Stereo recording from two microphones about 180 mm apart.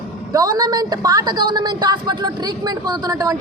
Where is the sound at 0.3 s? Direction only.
20° right (ahead or behind).